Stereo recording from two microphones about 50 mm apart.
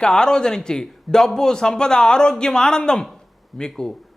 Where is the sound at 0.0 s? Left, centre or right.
Centre.